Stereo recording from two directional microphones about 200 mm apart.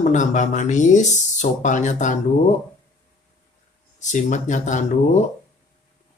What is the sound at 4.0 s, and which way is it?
Speech, 40° left (ahead or behind).